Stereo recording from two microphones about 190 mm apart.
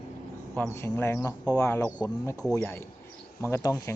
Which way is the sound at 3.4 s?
15° left (ahead or behind).